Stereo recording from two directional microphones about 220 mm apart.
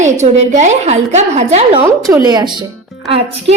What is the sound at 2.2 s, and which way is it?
Speech, 20° right (ahead or behind).